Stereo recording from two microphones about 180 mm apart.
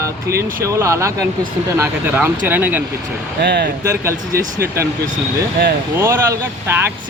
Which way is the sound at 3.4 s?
65° right (ahead or behind).